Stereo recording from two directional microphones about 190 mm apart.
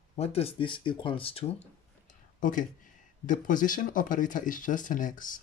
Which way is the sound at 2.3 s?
45° left (ahead or behind).